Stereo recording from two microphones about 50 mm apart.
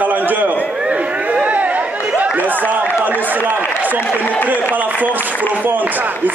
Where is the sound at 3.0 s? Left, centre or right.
Right.